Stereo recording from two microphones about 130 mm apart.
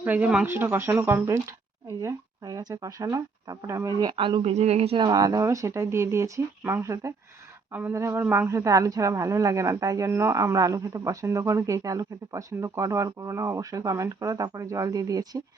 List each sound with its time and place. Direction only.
0.0 s speech: 15° right (ahead or behind)
4.2 s speech: 40° right (ahead or behind)
4.5 s speech: 55° right (ahead or behind)
4.9 s speech: 30° right (ahead or behind)